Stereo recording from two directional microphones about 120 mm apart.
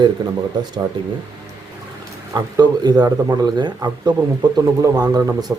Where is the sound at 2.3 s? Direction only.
35° right (ahead or behind).